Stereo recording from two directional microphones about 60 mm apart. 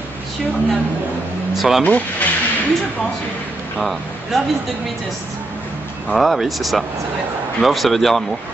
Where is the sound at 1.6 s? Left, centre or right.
Centre.